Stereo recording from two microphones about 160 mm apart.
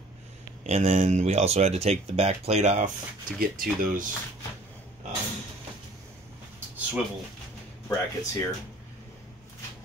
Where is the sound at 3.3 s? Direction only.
60° right (ahead or behind).